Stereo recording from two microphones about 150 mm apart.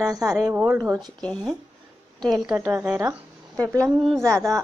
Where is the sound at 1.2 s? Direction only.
Centre (ahead or behind).